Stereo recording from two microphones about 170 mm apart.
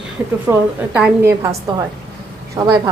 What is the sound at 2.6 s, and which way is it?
Speech, 20° right (ahead or behind).